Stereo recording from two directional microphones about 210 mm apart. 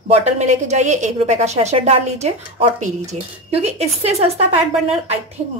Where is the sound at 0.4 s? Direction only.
35° right (ahead or behind).